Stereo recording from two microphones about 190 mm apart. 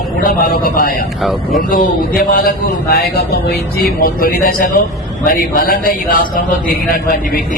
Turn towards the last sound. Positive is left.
turn(degrees=50)  # may be behind; listen again after turning